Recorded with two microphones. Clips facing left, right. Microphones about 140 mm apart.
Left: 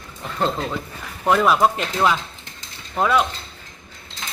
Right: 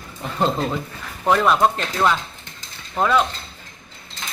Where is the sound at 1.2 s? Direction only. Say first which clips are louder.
Even; centre (ahead or behind).